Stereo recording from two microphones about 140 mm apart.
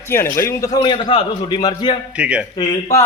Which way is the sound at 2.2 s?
5° right (ahead or behind).